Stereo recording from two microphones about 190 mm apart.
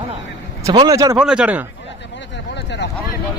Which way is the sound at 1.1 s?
5° right (ahead or behind).